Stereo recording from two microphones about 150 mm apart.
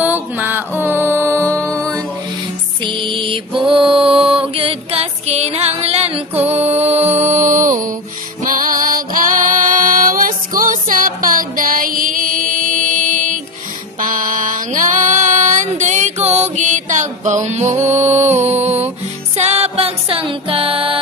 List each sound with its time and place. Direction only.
0.0 s music: 10° right (ahead or behind)
2.8 s mantra: 35° right (ahead or behind)
6.4 s music: 45° right (ahead or behind)